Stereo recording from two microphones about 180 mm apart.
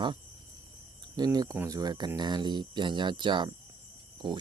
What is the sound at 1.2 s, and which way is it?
Speech, 20° right (ahead or behind).